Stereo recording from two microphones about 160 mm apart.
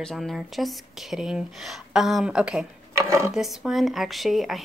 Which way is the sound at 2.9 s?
20° right (ahead or behind).